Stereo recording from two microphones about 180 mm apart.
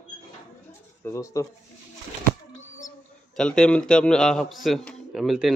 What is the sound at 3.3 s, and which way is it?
A man's voice, 5° left (ahead or behind).